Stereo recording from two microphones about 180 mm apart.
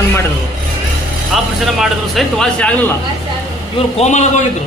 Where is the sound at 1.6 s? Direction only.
Centre (ahead or behind).